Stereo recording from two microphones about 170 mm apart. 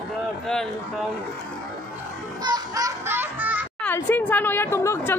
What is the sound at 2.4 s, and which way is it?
Music, 20° right (ahead or behind).